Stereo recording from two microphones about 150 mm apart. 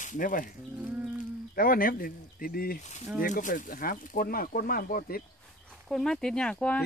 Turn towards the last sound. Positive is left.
turn(degrees=5)  # may be behind; listen again after turning